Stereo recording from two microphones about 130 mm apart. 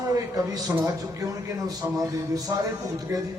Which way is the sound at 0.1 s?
25° right (ahead or behind).